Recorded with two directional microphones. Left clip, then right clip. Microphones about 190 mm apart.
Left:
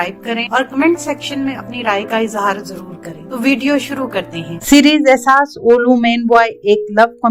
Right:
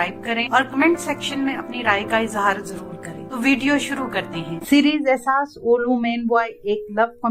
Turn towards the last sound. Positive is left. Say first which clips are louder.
# left 9 dB
turn(degrees=35)  # may be behind; listen again after turning